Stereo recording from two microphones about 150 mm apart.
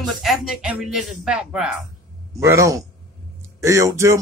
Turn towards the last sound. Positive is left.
turn(degrees=-20)  # may be behind; listen again after turning